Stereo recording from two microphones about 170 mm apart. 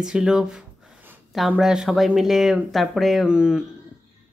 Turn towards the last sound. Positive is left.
turn(degrees=-5)  # may be behind; listen again after turning